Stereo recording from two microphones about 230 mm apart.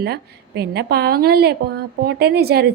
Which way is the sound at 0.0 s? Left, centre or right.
Right.